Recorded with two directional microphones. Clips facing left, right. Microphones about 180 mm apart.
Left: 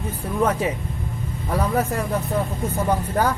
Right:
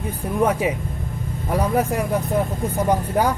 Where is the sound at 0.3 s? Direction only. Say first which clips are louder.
Right 2 dB; 10° right (ahead or behind).